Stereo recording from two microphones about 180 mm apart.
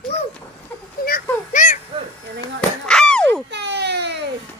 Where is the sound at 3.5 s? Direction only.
70° right (ahead or behind).